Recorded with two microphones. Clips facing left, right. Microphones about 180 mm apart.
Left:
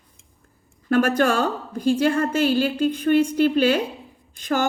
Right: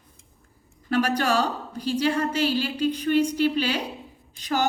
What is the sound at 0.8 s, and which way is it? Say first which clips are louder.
A woman's voice: left 4 dB; 50° left (ahead or behind).